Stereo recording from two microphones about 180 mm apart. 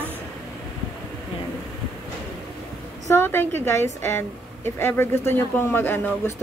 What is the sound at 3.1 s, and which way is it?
Speech, 10° left (ahead or behind).